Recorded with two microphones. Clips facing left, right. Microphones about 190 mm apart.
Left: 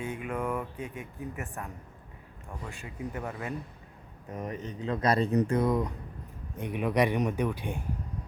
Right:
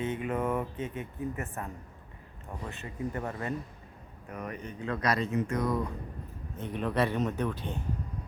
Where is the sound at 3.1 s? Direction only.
5° left (ahead or behind).